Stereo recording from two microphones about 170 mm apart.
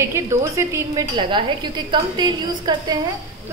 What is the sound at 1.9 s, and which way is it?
A woman's voice, 25° right (ahead or behind).